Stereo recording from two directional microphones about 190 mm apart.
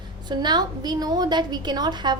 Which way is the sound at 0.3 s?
20° right (ahead or behind).